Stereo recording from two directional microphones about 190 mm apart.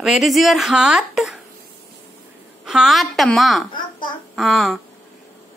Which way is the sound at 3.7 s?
25° left (ahead or behind).